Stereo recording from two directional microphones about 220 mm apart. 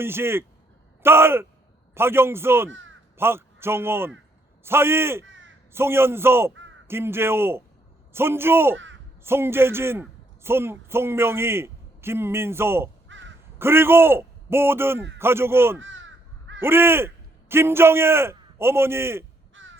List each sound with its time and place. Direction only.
0.0 s a man's voice: 10° right (ahead or behind)
2.6 s speech: 60° right (ahead or behind)
3.2 s a man's voice: 10° right (ahead or behind)
5.2 s caw: 60° right (ahead or behind)
5.7 s a man's voice: 10° right (ahead or behind)
13.1 s crow: 55° right (ahead or behind)
13.6 s a man's voice: 10° right (ahead or behind)
15.8 s crow: 60° right (ahead or behind)
16.6 s a man's voice: 10° right (ahead or behind)
19.6 s crow: 60° right (ahead or behind)